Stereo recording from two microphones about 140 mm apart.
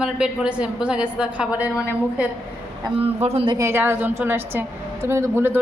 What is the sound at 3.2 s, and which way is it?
Speech, 40° right (ahead or behind).